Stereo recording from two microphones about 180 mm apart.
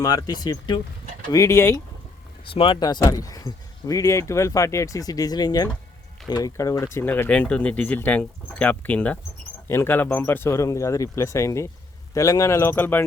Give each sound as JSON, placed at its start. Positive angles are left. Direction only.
{"t": 0.0, "sound": "speech", "side_deg": 20}
{"t": 2.5, "sound": "speech", "side_deg": 30}